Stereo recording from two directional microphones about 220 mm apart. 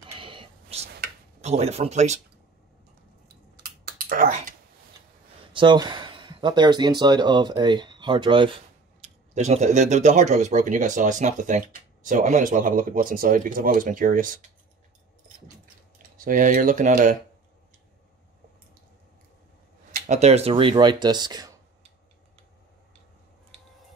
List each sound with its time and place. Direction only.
0.0 s whispering: 25° right (ahead or behind)
1.4 s speech: 30° right (ahead or behind)
3.8 s typing: 40° right (ahead or behind)
5.5 s speech: 20° right (ahead or behind); by 14.4 s 40° right (ahead or behind)
16.2 s speech: 40° right (ahead or behind)
19.9 s speech: 30° right (ahead or behind)